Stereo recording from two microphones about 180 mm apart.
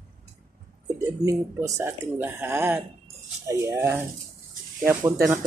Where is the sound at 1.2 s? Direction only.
20° right (ahead or behind).